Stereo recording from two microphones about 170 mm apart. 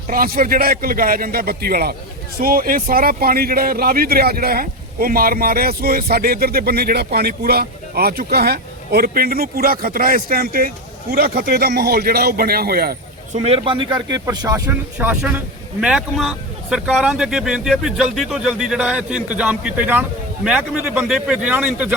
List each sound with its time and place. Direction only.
0.1 s speech: 60° right (ahead or behind)
13.3 s speech: 35° right (ahead or behind); by 14.8 s 15° right (ahead or behind)
14.9 s speech: 5° right (ahead or behind)